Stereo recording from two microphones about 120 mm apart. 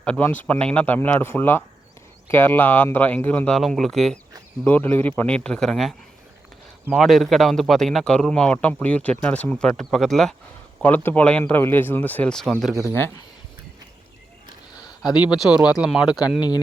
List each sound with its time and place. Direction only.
0.0 s speech: 10° left (ahead or behind)
4.6 s speech: 15° left (ahead or behind)
6.9 s a man's voice: centre (ahead or behind)
10.8 s speech: 15° left (ahead or behind)
12.7 s speech: 25° left (ahead or behind)
14.8 s a sound: 35° left (ahead or behind)
15.4 s a man's voice: 5° right (ahead or behind)